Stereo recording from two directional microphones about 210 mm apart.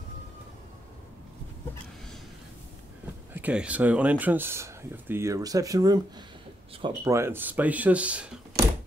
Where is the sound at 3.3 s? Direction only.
5° right (ahead or behind).